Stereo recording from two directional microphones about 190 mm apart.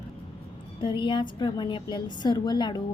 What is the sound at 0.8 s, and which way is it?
A woman's voice, 25° left (ahead or behind).